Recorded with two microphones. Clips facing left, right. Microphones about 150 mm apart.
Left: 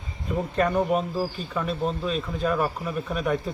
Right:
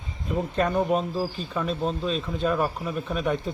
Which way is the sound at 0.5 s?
Centre (ahead or behind).